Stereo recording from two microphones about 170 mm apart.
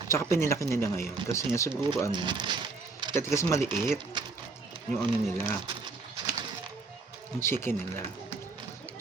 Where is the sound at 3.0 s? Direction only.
25° right (ahead or behind).